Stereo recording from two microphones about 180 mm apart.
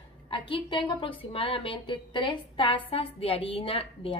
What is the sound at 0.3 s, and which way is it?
A woman's voice, 30° left (ahead or behind).